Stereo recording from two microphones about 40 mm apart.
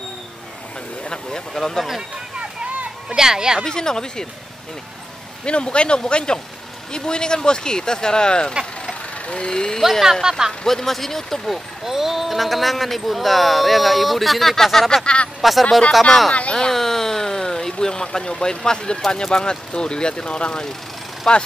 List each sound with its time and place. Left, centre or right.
1.0 s speech: centre
2.3 s a sound: right
3.2 s speech: centre
3.6 s speech: centre
5.4 s speech: left
10.3 s speech: centre
10.6 s speech: centre
11.8 s speech: centre
15.4 s speech: centre
16.3 s speech: left
16.7 s a sound: centre
18.9 s speech: centre